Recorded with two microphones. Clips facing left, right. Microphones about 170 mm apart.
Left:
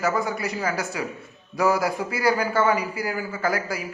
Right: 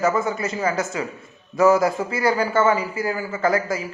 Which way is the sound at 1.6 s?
10° left (ahead or behind).